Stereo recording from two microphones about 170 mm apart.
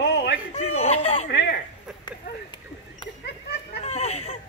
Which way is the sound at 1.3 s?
85° left.